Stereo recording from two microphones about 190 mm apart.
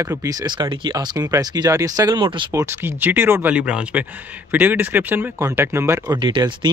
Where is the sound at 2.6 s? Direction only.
10° right (ahead or behind).